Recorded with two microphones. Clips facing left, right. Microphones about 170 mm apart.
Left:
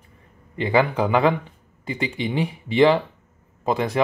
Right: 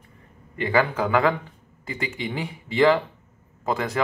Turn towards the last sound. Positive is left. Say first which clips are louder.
# left 3 dB
turn(degrees=20)  # may be behind; listen again after turning